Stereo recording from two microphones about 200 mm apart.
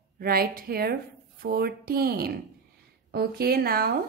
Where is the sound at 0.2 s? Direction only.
50° right (ahead or behind).